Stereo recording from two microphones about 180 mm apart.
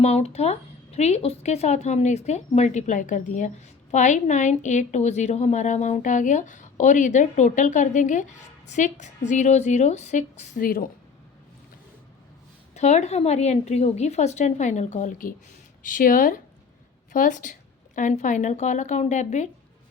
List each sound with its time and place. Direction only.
0.0 s a woman's voice: 35° left (ahead or behind); by 10.8 s 55° left (ahead or behind)
12.7 s a woman's voice: 40° left (ahead or behind)